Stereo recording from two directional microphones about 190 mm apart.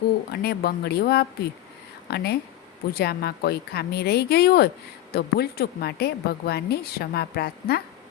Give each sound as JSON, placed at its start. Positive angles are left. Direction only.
{"t": 0.3, "sound": "a woman's voice", "side_deg": 55}